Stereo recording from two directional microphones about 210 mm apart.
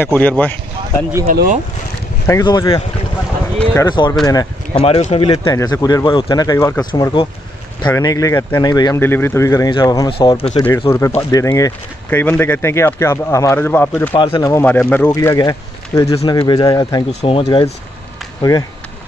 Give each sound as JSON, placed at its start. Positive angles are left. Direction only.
{"t": 0.0, "sound": "speech", "side_deg": 5}
{"t": 1.2, "sound": "speech", "side_deg": -40}
{"t": 2.2, "sound": "speech", "side_deg": 15}
{"t": 10.9, "sound": "speech", "side_deg": 15}
{"t": 14.1, "sound": "speech", "side_deg": 25}